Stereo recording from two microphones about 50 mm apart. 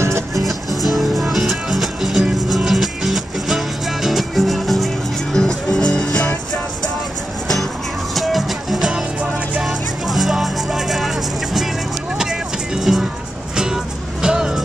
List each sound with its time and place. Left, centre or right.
0.3 s music: centre
8.1 s music: centre
8.9 s music: right
9.6 s music: centre
12.2 s vehicle: centre
14.2 s vehicle: centre